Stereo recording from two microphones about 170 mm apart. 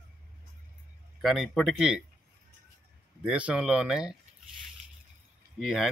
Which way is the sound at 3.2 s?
5° right (ahead or behind).